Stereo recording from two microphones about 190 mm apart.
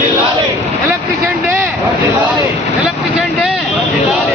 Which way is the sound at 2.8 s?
5° right (ahead or behind).